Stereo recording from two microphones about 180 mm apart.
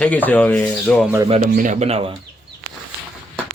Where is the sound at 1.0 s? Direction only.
15° right (ahead or behind).